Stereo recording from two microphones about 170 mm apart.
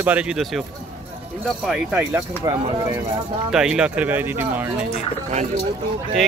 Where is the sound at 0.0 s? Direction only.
5° right (ahead or behind).